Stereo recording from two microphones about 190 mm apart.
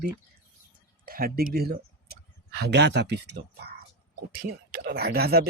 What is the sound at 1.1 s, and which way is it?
Speech, 50° right (ahead or behind).